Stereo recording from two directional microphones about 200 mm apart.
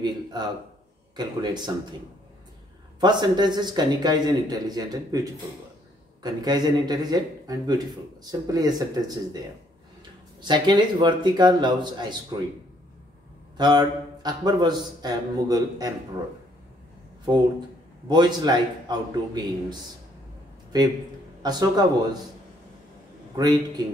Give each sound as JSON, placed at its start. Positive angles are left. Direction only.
{"t": 0.0, "sound": "a sound", "side_deg": -20}
{"t": 1.1, "sound": "speech", "side_deg": -20}
{"t": 3.0, "sound": "speech", "side_deg": -20}
{"t": 10.4, "sound": "speech", "side_deg": -20}
{"t": 13.6, "sound": "speech", "side_deg": -20}
{"t": 18.0, "sound": "speech", "side_deg": -20}
{"t": 21.4, "sound": "speech", "side_deg": -20}
{"t": 23.3, "sound": "speech", "side_deg": -20}